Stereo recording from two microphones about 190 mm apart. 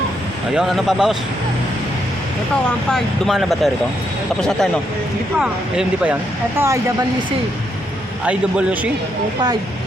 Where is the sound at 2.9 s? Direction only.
Centre (ahead or behind).